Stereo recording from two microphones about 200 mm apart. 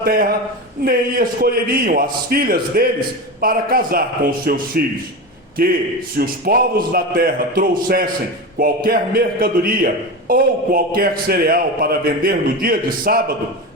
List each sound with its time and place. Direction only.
0.0 s a man's voice: 50° right (ahead or behind)